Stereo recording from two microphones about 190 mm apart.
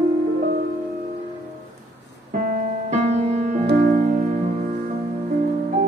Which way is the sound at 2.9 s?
35° right (ahead or behind).